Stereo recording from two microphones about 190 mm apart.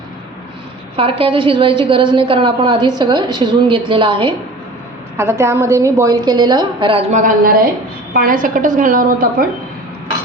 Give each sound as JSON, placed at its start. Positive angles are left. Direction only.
{"t": 0.9, "sound": "a woman's voice", "side_deg": -30}
{"t": 5.1, "sound": "a woman's voice", "side_deg": -15}
{"t": 7.1, "sound": "a woman's voice", "side_deg": -45}